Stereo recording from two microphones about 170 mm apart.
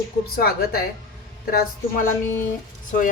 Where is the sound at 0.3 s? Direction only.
60° left (ahead or behind).